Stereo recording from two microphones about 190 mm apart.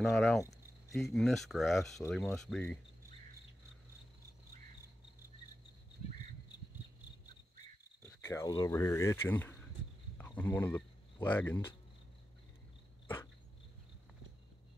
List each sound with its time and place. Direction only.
0.0 s speech: centre (ahead or behind)
8.2 s speech: 15° left (ahead or behind)